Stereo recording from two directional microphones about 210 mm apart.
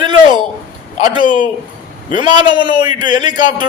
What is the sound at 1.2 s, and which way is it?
Speech, 40° left (ahead or behind).